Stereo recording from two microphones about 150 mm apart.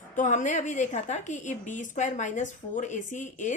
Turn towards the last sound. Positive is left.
turn(degrees=55)  # may be behind; listen again after turning